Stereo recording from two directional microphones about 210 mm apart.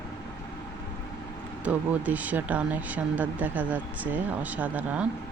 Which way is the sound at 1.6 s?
5° right (ahead or behind).